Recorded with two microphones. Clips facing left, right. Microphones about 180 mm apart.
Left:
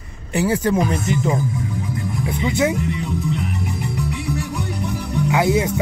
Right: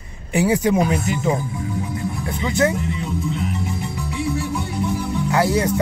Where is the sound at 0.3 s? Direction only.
15° right (ahead or behind).